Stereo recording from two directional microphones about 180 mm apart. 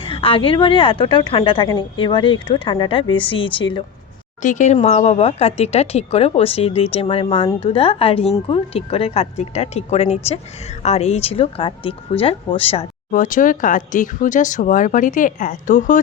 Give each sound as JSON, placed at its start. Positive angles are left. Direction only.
{"t": 0.1, "sound": "speech", "side_deg": 30}
{"t": 4.4, "sound": "speech", "side_deg": 45}
{"t": 13.1, "sound": "speech", "side_deg": 45}